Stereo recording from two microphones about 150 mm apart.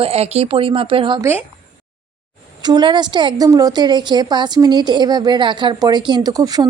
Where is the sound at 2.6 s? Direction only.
30° right (ahead or behind).